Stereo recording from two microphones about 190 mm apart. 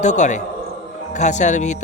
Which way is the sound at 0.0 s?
40° left (ahead or behind).